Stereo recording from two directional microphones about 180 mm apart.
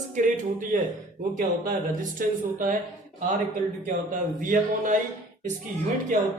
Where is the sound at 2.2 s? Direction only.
50° right (ahead or behind).